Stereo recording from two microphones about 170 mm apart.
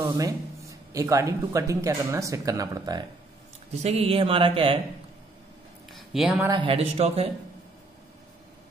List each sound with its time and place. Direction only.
0.0 s speech: 20° right (ahead or behind)
3.7 s speech: 40° right (ahead or behind)
5.9 s a sound: centre (ahead or behind)
6.5 s speech: 30° right (ahead or behind)